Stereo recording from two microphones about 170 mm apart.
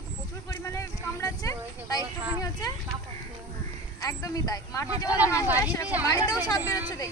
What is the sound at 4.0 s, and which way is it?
Speech, 20° left (ahead or behind).